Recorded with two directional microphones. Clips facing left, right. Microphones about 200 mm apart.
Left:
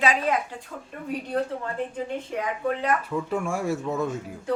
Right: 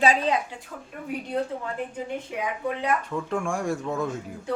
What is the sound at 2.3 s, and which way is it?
Speech, 15° right (ahead or behind).